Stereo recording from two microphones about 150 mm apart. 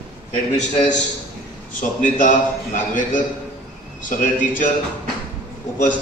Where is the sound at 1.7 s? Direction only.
60° left (ahead or behind).